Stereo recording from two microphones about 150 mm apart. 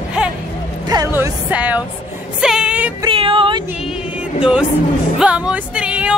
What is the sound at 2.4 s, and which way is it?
Music, 5° right (ahead or behind).